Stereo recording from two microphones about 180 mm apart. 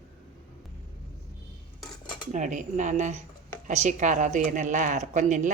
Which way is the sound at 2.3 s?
45° right (ahead or behind).